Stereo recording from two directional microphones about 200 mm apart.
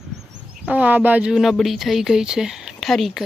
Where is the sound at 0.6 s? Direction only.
5° right (ahead or behind).